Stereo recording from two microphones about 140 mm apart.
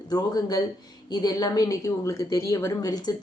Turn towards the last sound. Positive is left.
turn(degrees=30)  # may be behind; listen again after turning